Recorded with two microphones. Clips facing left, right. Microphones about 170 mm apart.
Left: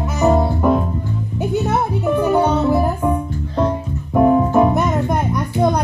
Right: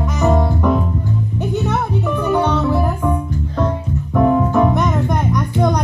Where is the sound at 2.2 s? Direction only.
10° left (ahead or behind).